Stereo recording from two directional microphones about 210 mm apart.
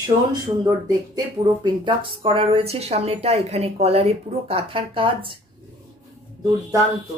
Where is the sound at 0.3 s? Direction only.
20° right (ahead or behind).